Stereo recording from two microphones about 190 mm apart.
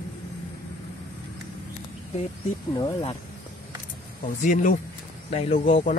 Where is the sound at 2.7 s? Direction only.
25° left (ahead or behind).